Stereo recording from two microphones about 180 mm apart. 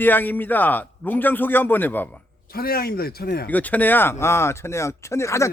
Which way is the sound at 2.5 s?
55° left (ahead or behind).